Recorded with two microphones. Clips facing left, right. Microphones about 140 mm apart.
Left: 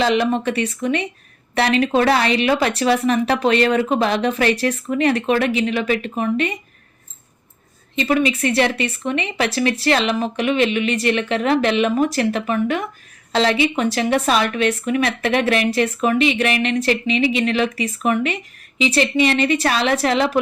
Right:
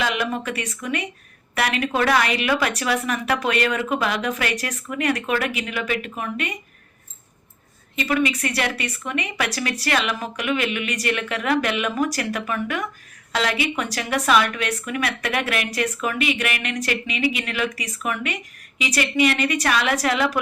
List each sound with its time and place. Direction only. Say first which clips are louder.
0.0 s speech: left 7 dB; 30° left (ahead or behind)
7.9 s speech: left 4 dB; 25° left (ahead or behind)